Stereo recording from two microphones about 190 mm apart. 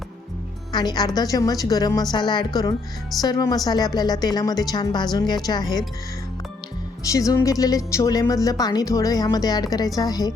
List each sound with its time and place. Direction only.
0.7 s a woman's voice: 20° left (ahead or behind)
7.1 s a woman's voice: 15° left (ahead or behind)